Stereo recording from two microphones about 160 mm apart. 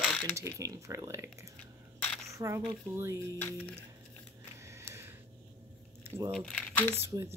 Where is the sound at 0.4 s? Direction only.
20° right (ahead or behind).